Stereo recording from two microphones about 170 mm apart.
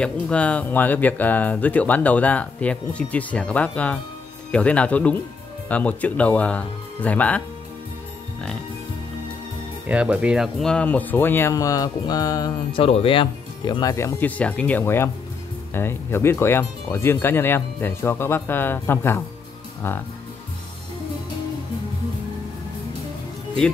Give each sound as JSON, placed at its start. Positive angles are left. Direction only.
{"t": 0.0, "sound": "speech", "side_deg": 5}
{"t": 9.8, "sound": "speech", "side_deg": -5}
{"t": 12.8, "sound": "speech", "side_deg": 35}